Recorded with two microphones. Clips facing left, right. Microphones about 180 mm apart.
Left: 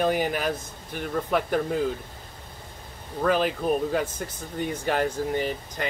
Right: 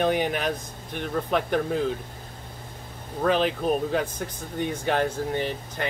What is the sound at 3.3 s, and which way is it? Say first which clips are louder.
Speech: even; 10° left (ahead or behind).